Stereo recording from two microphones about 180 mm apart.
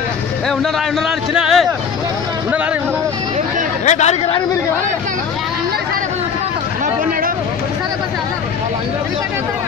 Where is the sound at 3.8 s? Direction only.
40° left (ahead or behind).